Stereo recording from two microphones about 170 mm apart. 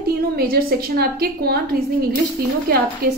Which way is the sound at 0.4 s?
65° right (ahead or behind).